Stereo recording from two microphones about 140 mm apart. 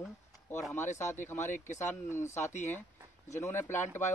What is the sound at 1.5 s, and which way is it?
Speech, 60° left (ahead or behind).